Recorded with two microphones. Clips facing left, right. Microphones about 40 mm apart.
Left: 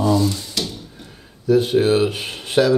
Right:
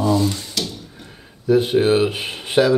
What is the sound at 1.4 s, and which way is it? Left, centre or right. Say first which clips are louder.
Speech: even; centre.